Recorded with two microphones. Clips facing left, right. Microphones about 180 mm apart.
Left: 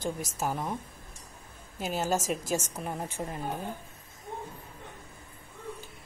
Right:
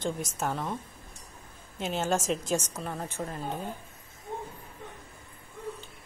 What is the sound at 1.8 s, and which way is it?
Speech, 5° left (ahead or behind).